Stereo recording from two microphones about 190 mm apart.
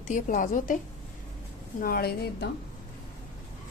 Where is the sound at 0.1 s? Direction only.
45° left (ahead or behind).